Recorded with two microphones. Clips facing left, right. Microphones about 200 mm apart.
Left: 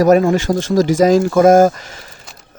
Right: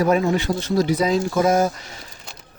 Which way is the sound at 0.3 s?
90° left.